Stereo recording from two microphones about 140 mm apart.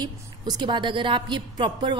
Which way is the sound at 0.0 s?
30° right (ahead or behind).